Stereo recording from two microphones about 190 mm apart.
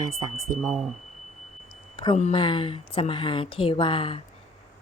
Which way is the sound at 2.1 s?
35° left (ahead or behind).